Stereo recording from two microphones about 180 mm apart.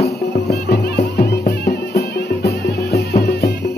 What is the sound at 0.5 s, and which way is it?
Music, 70° left (ahead or behind).